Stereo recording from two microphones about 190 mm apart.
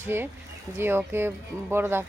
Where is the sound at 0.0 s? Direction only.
10° right (ahead or behind).